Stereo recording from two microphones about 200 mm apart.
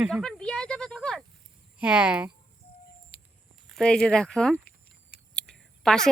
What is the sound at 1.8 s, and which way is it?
Speech, 5° right (ahead or behind).